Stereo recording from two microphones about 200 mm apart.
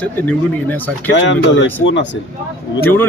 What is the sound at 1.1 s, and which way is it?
Speech, 65° left (ahead or behind).